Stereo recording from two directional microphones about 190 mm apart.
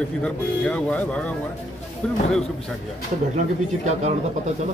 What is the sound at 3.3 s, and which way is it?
Speech, 35° right (ahead or behind).